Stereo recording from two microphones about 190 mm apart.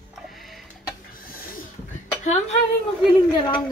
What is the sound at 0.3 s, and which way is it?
Tick-tock, centre (ahead or behind).